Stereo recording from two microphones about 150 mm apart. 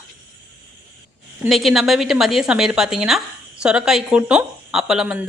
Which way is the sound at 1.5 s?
Centre (ahead or behind).